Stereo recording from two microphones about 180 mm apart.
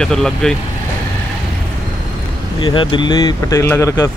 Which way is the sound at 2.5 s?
25° left (ahead or behind).